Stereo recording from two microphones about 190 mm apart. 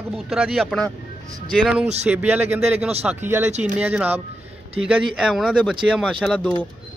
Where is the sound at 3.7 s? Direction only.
10° right (ahead or behind).